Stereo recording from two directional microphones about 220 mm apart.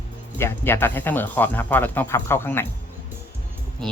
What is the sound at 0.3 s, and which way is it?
Speech, 10° left (ahead or behind).